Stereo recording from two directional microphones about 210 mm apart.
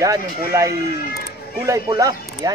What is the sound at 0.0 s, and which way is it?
A man's voice, 15° right (ahead or behind).